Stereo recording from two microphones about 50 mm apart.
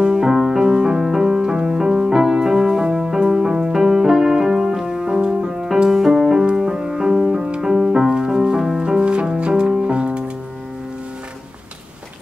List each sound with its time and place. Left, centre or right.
0.0 s music: centre